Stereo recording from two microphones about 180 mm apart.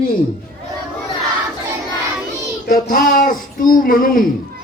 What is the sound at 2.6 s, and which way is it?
A child's voice, 50° left (ahead or behind).